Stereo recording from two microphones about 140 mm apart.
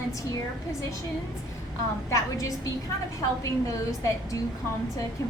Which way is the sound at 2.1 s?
25° left (ahead or behind).